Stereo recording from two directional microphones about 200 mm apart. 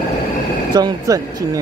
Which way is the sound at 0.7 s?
20° right (ahead or behind).